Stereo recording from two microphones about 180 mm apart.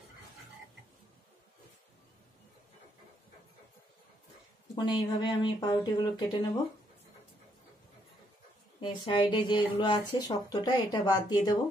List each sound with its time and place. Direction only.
4.7 s speech: 25° left (ahead or behind)
8.8 s speech: 25° left (ahead or behind)